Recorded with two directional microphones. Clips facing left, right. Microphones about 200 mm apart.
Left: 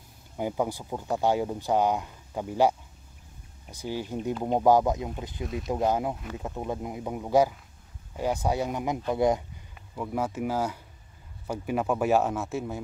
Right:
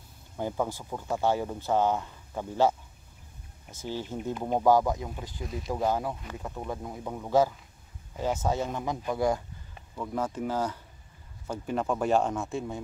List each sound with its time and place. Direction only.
0.4 s speech: 15° left (ahead or behind)
3.7 s speech: 15° left (ahead or behind)
5.4 s speech: centre (ahead or behind)
5.7 s speech: 20° left (ahead or behind)
9.9 s speech: 10° left (ahead or behind)